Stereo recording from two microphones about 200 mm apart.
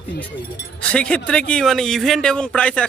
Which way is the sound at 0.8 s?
5° left (ahead or behind).